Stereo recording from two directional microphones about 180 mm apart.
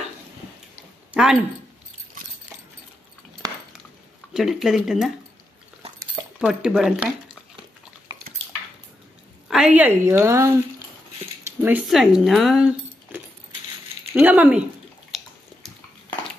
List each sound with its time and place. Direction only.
1.1 s speech: 5° right (ahead or behind)
3.4 s a sound: 20° right (ahead or behind)
4.3 s speech: centre (ahead or behind)
6.4 s speech: 5° right (ahead or behind)
9.5 s speech: 5° right (ahead or behind)
11.6 s speech: 5° right (ahead or behind)
15.0 s bathtub: centre (ahead or behind)